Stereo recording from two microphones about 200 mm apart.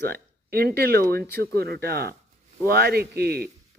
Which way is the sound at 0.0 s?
50° right (ahead or behind).